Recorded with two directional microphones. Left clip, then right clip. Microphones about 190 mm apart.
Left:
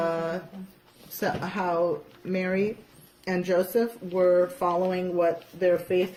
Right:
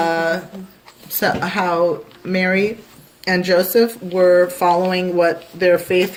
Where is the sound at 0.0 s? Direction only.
10° right (ahead or behind).